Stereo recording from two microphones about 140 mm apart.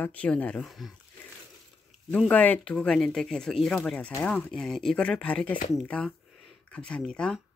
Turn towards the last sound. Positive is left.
turn(degrees=5)  # may be behind; listen again after turning